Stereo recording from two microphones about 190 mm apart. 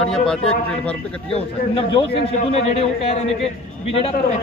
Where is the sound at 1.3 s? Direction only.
30° left (ahead or behind).